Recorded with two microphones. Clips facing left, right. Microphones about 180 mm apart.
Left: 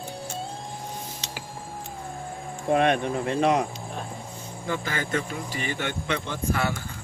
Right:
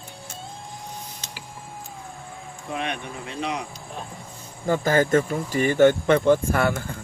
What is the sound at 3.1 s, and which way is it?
Speech, 55° left (ahead or behind).